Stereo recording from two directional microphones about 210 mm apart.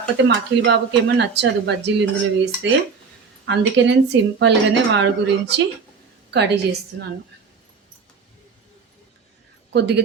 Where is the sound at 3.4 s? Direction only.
55° right (ahead or behind).